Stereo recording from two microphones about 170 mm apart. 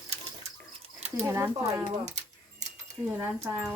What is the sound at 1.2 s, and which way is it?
Speech, 15° right (ahead or behind).